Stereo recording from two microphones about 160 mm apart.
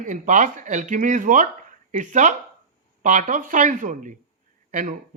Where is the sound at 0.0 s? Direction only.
50° right (ahead or behind).